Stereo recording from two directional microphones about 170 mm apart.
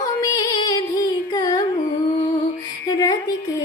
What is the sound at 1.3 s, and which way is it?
Carnatic music, 20° left (ahead or behind).